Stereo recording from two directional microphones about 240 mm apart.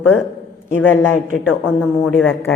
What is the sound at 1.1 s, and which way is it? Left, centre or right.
Speech, left.